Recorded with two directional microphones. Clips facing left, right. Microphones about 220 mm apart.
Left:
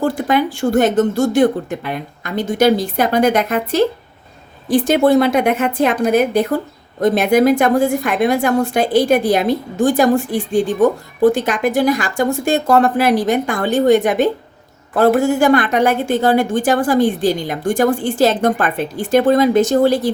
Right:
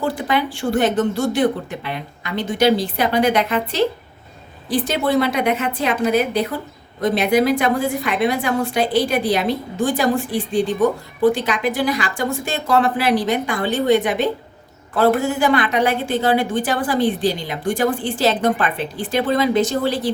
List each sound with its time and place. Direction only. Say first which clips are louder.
0.0 s a woman's voice: left 4 dB; 45° left (ahead or behind)